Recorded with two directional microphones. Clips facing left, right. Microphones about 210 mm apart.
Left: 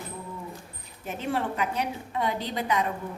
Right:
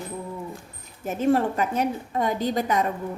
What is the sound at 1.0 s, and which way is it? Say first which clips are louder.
A woman's voice: right 8 dB; 45° right (ahead or behind).